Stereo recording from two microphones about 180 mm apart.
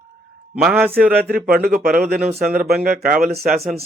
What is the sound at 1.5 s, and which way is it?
Speech, 60° right (ahead or behind).